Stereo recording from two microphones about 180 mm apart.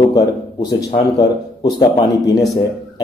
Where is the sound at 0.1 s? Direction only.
20° left (ahead or behind).